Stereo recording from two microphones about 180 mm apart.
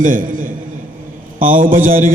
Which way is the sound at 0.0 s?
50° right (ahead or behind).